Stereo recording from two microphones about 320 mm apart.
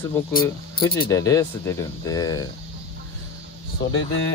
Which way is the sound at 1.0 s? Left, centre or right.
Centre.